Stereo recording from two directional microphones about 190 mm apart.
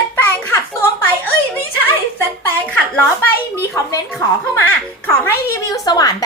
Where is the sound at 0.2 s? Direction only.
10° left (ahead or behind).